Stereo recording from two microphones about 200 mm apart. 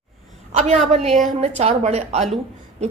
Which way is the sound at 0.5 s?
30° right (ahead or behind).